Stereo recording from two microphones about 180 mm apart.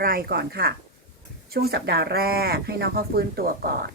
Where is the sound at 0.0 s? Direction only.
55° right (ahead or behind).